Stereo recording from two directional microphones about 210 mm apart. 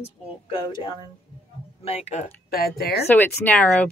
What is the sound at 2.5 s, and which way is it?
Speech, 45° left (ahead or behind).